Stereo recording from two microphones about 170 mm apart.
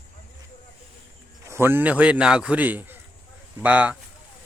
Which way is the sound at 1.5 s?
15° right (ahead or behind).